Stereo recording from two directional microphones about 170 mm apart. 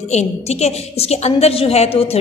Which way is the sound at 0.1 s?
40° left (ahead or behind).